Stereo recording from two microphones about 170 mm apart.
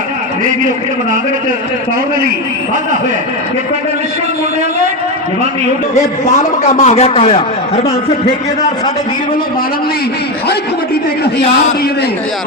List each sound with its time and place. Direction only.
5.9 s a man's voice: 40° left (ahead or behind)